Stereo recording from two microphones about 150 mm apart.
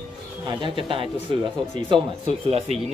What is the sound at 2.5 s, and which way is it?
Speech, 45° right (ahead or behind).